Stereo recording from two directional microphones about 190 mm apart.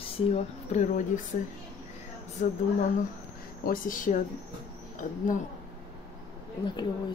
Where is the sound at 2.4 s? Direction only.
40° left (ahead or behind).